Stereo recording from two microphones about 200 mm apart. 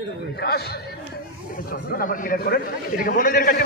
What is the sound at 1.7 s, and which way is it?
A man's voice, 45° left (ahead or behind).